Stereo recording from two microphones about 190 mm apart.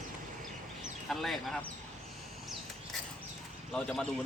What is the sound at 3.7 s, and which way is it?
Speech, 5° left (ahead or behind).